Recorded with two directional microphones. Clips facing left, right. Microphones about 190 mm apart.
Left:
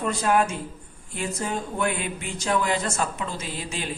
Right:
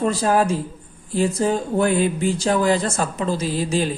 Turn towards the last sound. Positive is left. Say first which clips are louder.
# right 11 dB
turn(degrees=-35)  # may be behind; listen again after turning